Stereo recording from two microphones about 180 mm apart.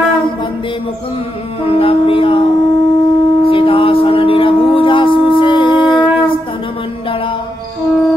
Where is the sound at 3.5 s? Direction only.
30° left (ahead or behind).